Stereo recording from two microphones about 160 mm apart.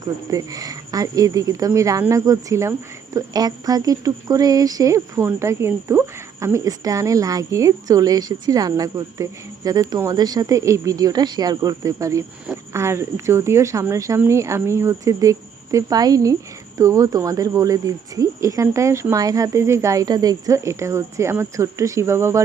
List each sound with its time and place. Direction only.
0.3 s speech: 20° right (ahead or behind)